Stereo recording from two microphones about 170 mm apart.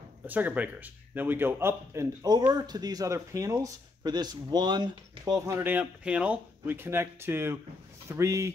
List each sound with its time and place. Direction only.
0.3 s a man's voice: 10° right (ahead or behind)
5.6 s speech: 10° right (ahead or behind)